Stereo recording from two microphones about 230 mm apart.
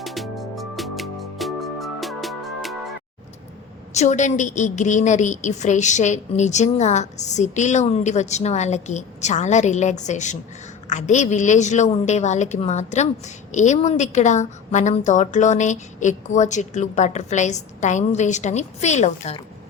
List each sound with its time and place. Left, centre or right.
0.0 s music: centre
3.9 s a woman's voice: left